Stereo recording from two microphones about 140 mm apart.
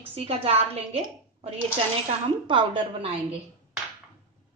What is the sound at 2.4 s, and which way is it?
Speech, 35° right (ahead or behind).